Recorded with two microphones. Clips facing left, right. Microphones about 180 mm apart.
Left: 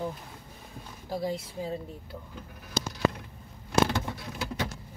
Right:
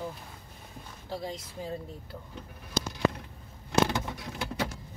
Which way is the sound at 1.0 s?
10° left (ahead or behind).